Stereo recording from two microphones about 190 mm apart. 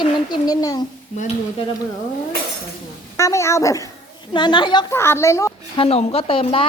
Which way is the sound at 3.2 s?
15° left (ahead or behind).